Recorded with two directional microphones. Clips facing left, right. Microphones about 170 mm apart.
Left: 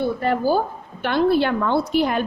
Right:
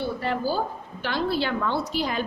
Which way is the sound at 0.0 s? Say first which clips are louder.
Left 6 dB; 55° left (ahead or behind).